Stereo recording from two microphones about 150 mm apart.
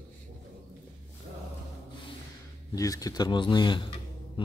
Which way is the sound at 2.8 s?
25° left (ahead or behind).